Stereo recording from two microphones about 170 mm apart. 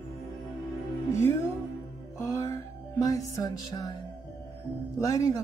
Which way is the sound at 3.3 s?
20° left (ahead or behind).